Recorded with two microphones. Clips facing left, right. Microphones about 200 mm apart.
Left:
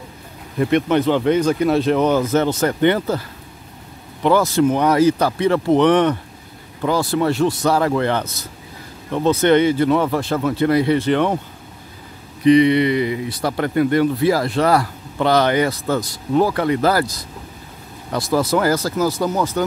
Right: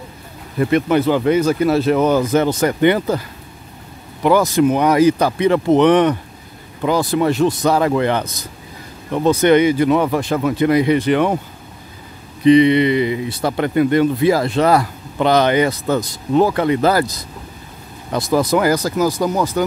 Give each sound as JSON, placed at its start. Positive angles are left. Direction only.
{"t": 0.6, "sound": "speech", "side_deg": 0}
{"t": 12.4, "sound": "speech", "side_deg": -25}